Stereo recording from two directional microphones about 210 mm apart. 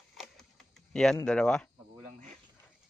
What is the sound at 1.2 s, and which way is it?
Speech, 5° left (ahead or behind).